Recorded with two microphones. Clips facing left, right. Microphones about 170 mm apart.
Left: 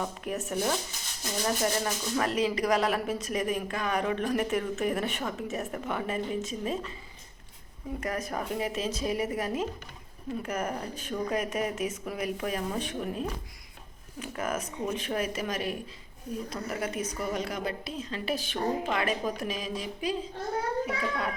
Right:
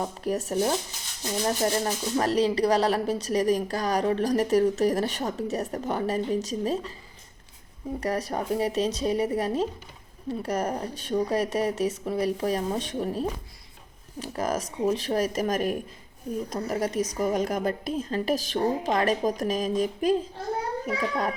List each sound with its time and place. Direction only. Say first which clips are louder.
0.0 s speech: right 5 dB; 35° right (ahead or behind)
8.0 s speech: right 5 dB; 35° right (ahead or behind)